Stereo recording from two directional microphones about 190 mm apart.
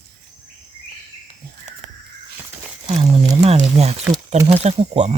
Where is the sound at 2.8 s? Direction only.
30° right (ahead or behind).